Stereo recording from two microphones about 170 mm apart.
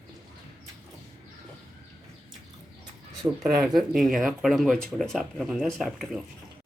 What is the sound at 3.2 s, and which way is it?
Speech, 25° right (ahead or behind).